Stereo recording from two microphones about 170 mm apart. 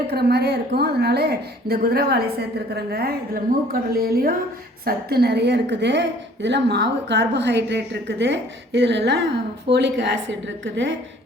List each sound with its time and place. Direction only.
0.1 s a woman's voice: 70° right (ahead or behind); by 10.9 s 90° right